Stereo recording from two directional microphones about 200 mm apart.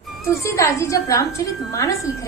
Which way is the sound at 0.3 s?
15° left (ahead or behind).